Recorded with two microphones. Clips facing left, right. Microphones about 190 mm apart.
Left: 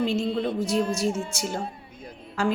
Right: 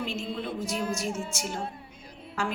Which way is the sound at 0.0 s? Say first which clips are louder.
Left 9 dB; 35° left (ahead or behind).